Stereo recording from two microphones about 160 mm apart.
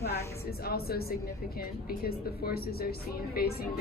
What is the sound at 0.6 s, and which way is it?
Speech, 75° left (ahead or behind).